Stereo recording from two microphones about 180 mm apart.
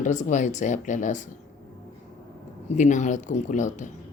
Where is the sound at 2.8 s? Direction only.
40° left (ahead or behind).